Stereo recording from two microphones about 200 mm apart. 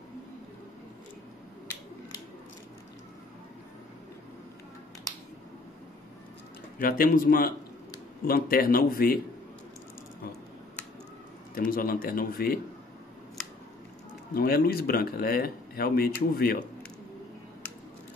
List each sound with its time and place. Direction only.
6.8 s speech: 45° left (ahead or behind)
11.5 s speech: 45° left (ahead or behind)
14.3 s speech: 50° left (ahead or behind)